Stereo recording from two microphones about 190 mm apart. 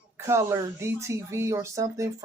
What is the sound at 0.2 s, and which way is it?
Speech, 15° right (ahead or behind).